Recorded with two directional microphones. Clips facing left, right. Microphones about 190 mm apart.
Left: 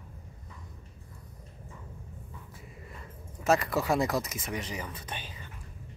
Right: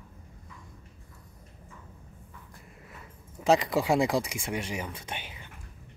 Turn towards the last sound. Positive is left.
turn(degrees=-15)  # may be behind; listen again after turning